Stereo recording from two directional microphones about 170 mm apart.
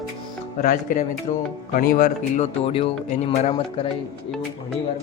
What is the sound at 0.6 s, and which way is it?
Speech, 55° left (ahead or behind).